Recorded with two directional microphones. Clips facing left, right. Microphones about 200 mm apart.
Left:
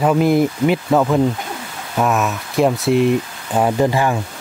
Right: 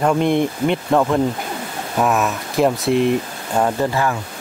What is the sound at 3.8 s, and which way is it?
Speech, 15° left (ahead or behind).